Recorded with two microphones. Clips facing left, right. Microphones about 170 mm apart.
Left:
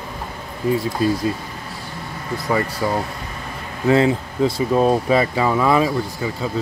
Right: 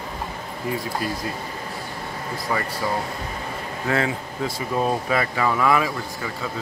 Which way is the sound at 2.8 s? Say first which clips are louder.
Left 4 dB; 25° left (ahead or behind).